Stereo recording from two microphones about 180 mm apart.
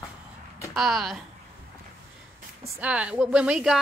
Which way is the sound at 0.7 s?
Centre (ahead or behind).